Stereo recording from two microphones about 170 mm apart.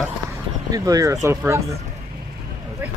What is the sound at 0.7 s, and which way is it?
Speech, 20° right (ahead or behind).